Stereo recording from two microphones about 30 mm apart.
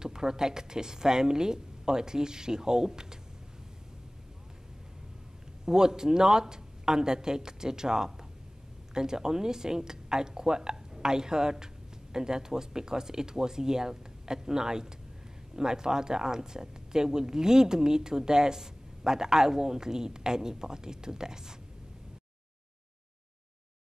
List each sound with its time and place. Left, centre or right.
0.0 s speech: right
5.7 s speech: right